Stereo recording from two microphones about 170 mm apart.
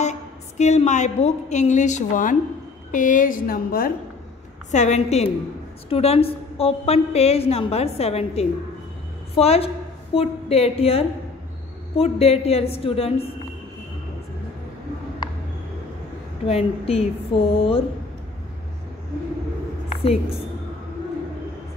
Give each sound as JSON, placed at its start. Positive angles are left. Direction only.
{"t": 0.6, "sound": "a woman's voice", "side_deg": 40}
{"t": 4.6, "sound": "a woman's voice", "side_deg": 45}
{"t": 16.4, "sound": "a woman's voice", "side_deg": 35}
{"t": 19.9, "sound": "a sound", "side_deg": 35}